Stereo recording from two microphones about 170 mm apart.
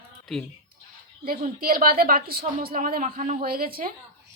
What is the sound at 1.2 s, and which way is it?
A woman's voice, 60° right (ahead or behind).